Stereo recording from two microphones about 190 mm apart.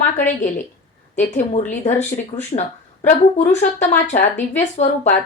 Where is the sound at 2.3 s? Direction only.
20° left (ahead or behind).